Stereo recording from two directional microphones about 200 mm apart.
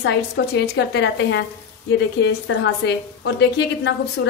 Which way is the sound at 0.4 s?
65° left (ahead or behind).